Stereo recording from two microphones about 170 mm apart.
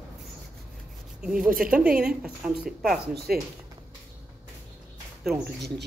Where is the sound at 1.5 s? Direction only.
55° right (ahead or behind).